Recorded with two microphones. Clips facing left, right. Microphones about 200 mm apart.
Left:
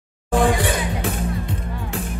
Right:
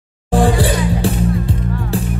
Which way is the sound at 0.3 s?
30° right (ahead or behind).